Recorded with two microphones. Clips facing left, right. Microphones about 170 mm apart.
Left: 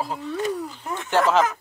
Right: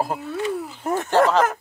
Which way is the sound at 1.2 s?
Centre (ahead or behind).